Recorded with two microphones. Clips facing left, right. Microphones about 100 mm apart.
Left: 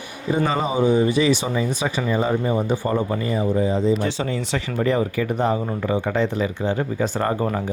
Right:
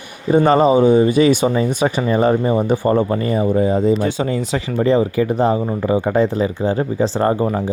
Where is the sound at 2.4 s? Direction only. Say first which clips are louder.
Right 6 dB; 40° right (ahead or behind).